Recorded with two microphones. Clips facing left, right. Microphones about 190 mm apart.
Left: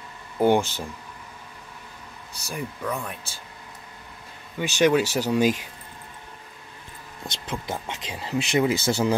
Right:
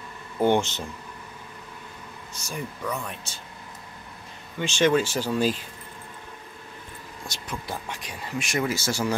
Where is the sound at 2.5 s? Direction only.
Centre (ahead or behind).